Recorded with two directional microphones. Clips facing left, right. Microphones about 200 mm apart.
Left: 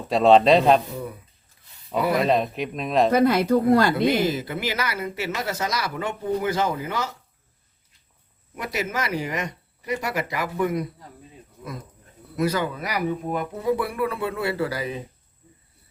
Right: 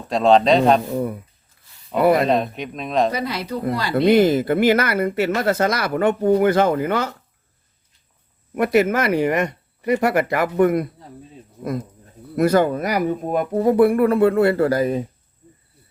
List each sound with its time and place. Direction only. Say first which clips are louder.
0.1 s speech: right 1 dB; centre (ahead or behind)
2.2 s speech: right 2 dB; centre (ahead or behind)
3.1 s speech: left 7 dB; 50° left (ahead or behind)
3.9 s speech: right 7 dB; 55° right (ahead or behind)
8.5 s speech: right 11 dB; 55° right (ahead or behind)
12.4 s speech: right 8 dB; 50° right (ahead or behind)